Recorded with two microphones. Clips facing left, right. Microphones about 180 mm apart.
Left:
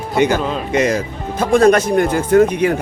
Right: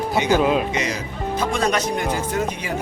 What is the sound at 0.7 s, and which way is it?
Speech, 50° left (ahead or behind).